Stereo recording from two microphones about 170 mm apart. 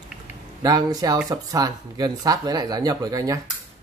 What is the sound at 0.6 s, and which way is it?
Speech, 20° right (ahead or behind).